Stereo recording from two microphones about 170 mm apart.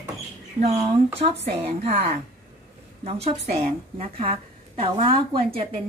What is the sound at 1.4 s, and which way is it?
A woman's voice, 40° right (ahead or behind).